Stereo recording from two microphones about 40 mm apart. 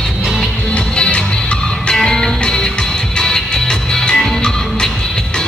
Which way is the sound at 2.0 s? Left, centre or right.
Centre.